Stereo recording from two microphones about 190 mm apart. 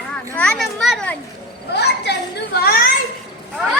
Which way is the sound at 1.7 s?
60° left (ahead or behind).